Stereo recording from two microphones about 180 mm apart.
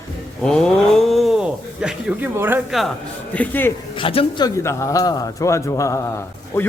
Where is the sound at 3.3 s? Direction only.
10° left (ahead or behind).